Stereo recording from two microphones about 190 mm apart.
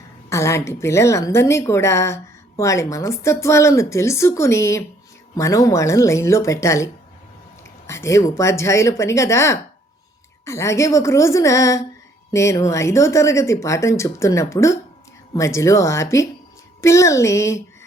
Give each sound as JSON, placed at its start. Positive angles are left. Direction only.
{"t": 0.3, "sound": "a woman's voice", "side_deg": 15}